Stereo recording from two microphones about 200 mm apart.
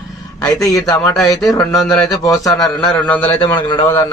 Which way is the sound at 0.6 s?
15° left (ahead or behind).